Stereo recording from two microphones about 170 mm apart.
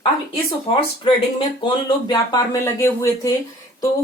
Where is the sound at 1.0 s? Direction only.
30° left (ahead or behind).